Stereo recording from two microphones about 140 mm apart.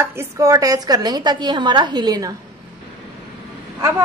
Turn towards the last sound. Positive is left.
turn(degrees=-20)  # may be behind; listen again after turning